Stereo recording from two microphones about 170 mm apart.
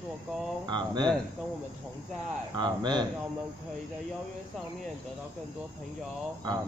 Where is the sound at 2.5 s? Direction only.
25° right (ahead or behind).